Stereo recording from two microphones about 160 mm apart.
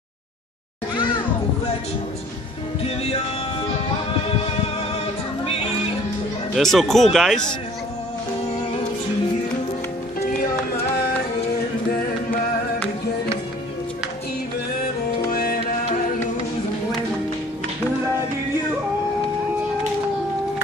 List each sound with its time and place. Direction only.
2.8 s music: 40° left (ahead or behind)
5.4 s music: 35° left (ahead or behind)
6.5 s speech: centre (ahead or behind)
10.2 s music: 70° left (ahead or behind)
15.3 s music: 65° left (ahead or behind)